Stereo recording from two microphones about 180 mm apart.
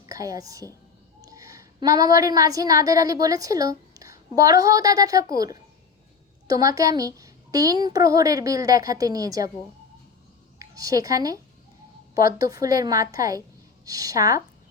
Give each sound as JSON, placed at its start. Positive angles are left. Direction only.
{"t": 0.0, "sound": "a woman's voice", "side_deg": -20}
{"t": 6.5, "sound": "a woman's voice", "side_deg": -20}
{"t": 10.6, "sound": "a woman's voice", "side_deg": -20}
{"t": 12.4, "sound": "a woman's voice", "side_deg": -20}